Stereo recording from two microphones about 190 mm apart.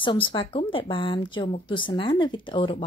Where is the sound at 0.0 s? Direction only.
25° left (ahead or behind).